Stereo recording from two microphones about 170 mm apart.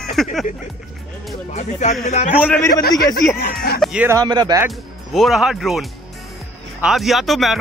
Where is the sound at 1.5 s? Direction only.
45° left (ahead or behind).